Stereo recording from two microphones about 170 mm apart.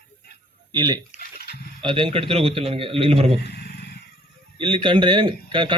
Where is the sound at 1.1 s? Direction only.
65° left (ahead or behind).